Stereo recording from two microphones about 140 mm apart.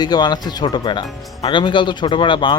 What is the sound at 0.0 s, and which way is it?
Speech, 30° left (ahead or behind).